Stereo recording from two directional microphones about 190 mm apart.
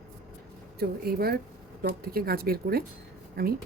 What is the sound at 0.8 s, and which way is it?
Speech, 55° right (ahead or behind).